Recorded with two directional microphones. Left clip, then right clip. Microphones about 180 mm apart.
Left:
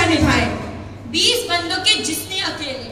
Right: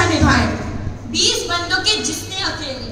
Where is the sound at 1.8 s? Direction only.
20° right (ahead or behind).